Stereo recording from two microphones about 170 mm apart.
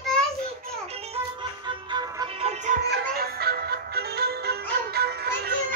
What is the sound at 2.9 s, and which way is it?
Music, 65° right (ahead or behind).